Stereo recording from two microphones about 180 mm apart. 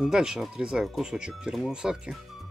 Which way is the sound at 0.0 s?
5° right (ahead or behind).